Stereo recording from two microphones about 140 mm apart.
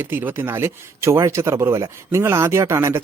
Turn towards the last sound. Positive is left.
turn(degrees=-20)  # may be behind; listen again after turning